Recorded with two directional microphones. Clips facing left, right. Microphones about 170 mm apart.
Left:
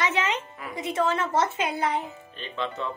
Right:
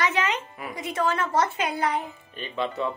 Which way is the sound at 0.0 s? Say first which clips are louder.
Right 1 dB; 25° left (ahead or behind).